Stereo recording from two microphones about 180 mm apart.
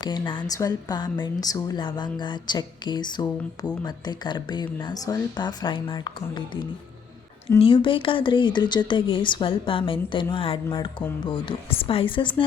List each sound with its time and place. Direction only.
0.0 s a woman's voice: 25° left (ahead or behind)
7.6 s a woman's voice: 30° left (ahead or behind)